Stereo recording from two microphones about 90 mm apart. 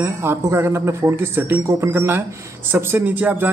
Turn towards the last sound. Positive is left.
turn(degrees=-20)  # may be behind; listen again after turning